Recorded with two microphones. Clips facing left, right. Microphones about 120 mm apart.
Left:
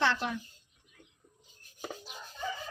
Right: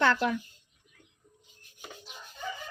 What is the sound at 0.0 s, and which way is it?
Speech, 55° right (ahead or behind).